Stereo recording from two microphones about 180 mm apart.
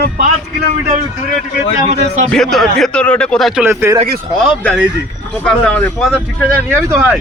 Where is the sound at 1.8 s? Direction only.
35° right (ahead or behind).